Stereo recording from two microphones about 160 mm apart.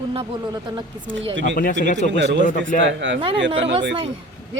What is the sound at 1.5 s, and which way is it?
Speech, 60° left (ahead or behind).